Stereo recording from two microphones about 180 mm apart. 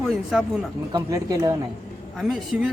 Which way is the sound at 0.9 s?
20° right (ahead or behind).